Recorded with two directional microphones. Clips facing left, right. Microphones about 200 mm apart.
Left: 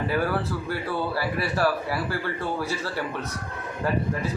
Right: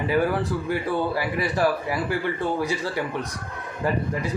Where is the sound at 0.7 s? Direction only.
15° right (ahead or behind).